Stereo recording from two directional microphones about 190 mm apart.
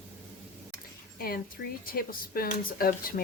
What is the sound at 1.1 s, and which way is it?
Speech, 50° left (ahead or behind).